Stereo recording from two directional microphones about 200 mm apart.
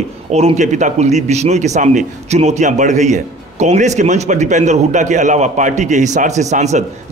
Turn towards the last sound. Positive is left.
turn(degrees=-35)  # may be behind; listen again after turning